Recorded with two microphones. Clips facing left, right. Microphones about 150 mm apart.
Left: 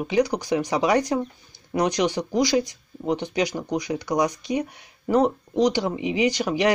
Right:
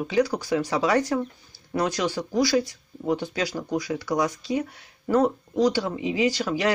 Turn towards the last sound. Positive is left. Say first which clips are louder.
# left 2 dB
turn(degrees=20)  # may be behind; listen again after turning